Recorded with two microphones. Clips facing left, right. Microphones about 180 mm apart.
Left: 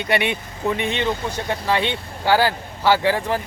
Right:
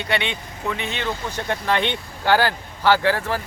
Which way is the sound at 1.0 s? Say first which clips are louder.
Left 3 dB; 10° left (ahead or behind).